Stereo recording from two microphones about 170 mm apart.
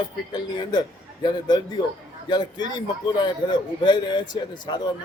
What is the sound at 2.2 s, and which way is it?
Speech, 25° left (ahead or behind).